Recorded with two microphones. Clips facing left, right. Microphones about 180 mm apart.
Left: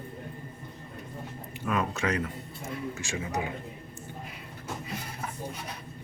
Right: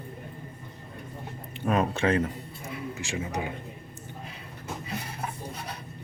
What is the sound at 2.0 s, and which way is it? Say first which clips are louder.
Speech: right 7 dB; 30° right (ahead or behind).